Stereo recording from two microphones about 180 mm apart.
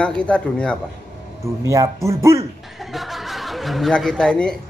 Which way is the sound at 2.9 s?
Centre (ahead or behind).